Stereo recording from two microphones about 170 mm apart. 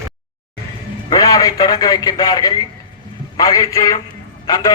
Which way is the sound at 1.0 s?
20° left (ahead or behind).